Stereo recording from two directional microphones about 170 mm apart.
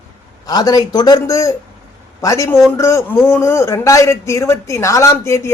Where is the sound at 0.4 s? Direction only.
20° left (ahead or behind).